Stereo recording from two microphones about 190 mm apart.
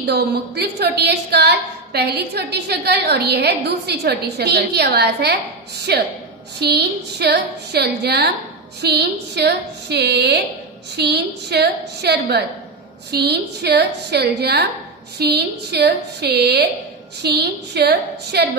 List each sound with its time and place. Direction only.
0.0 s a woman's voice: 60° right (ahead or behind)